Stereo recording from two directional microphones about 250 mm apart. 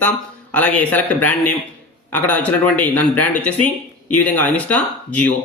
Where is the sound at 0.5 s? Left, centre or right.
Centre.